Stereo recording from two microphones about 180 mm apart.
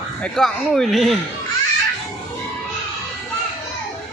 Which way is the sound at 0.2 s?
Centre (ahead or behind).